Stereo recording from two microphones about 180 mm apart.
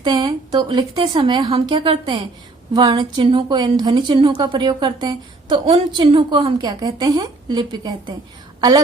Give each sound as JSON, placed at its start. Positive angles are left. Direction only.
{"t": 0.0, "sound": "a woman's voice", "side_deg": -25}